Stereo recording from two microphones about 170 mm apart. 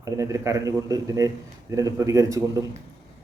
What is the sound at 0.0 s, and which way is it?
Speech, 20° right (ahead or behind).